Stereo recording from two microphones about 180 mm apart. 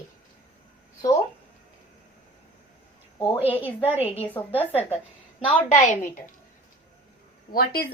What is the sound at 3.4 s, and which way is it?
Speech, 30° left (ahead or behind).